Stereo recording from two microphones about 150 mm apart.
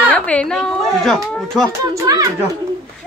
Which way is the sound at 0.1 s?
10° left (ahead or behind).